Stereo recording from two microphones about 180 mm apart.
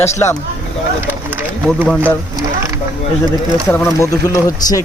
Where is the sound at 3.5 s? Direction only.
15° left (ahead or behind).